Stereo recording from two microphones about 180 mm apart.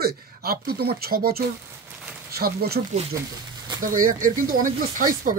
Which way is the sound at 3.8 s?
50° right (ahead or behind).